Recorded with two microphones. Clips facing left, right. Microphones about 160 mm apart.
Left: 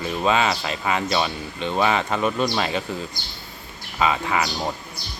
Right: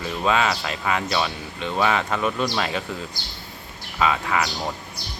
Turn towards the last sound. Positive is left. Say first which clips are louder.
# left 1 dB
turn(degrees=10)  # may be behind; listen again after turning